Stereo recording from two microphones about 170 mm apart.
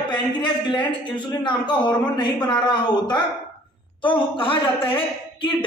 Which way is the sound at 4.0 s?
30° left (ahead or behind).